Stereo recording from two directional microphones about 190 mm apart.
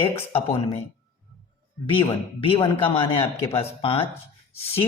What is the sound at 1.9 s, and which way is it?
Speech, 30° left (ahead or behind).